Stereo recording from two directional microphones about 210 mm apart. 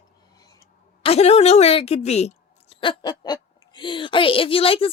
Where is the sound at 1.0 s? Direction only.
30° left (ahead or behind).